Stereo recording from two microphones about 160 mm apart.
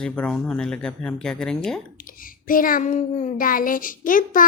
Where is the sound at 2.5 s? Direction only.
60° left (ahead or behind).